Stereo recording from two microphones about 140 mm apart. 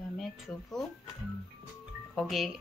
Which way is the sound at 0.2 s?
Centre (ahead or behind).